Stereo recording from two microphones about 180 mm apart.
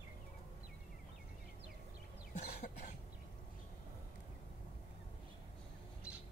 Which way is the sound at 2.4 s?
55° left (ahead or behind).